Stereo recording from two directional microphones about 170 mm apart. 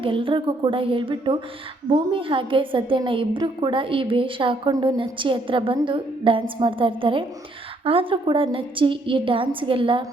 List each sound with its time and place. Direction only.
0.0 s a woman's voice: 30° right (ahead or behind)